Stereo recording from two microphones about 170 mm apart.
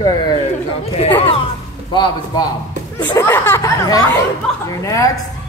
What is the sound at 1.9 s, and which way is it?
A man's voice, 25° left (ahead or behind).